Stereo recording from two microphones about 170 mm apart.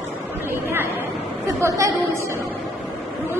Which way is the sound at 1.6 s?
15° right (ahead or behind).